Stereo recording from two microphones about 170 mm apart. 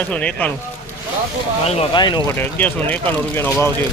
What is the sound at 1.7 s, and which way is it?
Speech, 40° left (ahead or behind).